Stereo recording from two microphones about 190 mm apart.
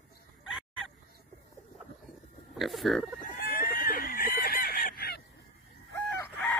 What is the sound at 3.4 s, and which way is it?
Fowl, 50° left (ahead or behind).